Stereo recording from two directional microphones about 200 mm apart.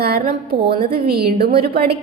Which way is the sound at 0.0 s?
50° right (ahead or behind).